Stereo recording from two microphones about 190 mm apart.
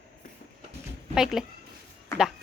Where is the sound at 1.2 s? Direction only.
Centre (ahead or behind).